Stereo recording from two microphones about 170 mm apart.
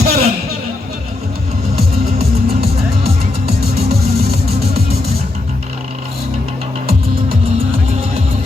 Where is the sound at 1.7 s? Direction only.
65° right (ahead or behind).